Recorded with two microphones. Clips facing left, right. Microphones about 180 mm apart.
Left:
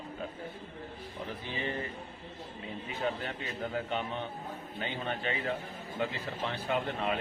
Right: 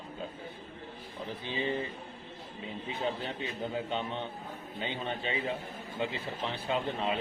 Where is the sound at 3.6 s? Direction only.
20° right (ahead or behind).